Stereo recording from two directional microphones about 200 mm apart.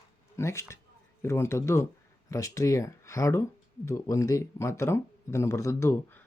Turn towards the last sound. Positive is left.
turn(degrees=10)  # may be behind; listen again after turning